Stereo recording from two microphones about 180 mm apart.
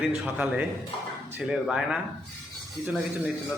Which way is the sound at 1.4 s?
Centre (ahead or behind).